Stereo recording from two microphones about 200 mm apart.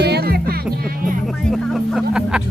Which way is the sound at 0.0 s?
55° right (ahead or behind).